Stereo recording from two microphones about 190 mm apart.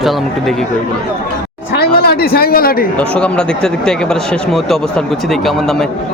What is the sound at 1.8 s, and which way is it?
A man's voice, 55° left (ahead or behind).